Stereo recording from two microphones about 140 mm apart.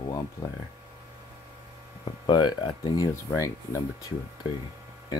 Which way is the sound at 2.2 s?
35° left (ahead or behind).